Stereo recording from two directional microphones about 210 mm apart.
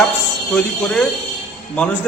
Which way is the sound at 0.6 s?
5° left (ahead or behind).